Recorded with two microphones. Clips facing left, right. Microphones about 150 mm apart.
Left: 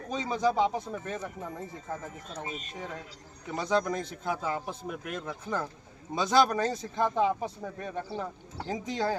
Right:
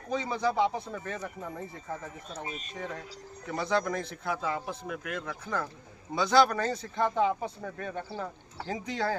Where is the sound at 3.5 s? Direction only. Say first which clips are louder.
Left 1 dB; 15° left (ahead or behind).